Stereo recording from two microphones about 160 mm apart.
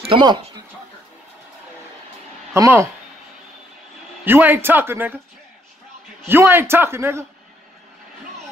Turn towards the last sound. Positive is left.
turn(degrees=-15)  # may be behind; listen again after turning